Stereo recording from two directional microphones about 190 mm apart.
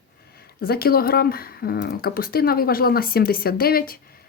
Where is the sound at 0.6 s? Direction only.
50° left (ahead or behind).